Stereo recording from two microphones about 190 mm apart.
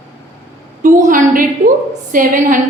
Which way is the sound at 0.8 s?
45° right (ahead or behind).